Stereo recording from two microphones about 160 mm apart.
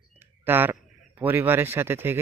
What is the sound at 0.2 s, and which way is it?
Speech, 10° right (ahead or behind).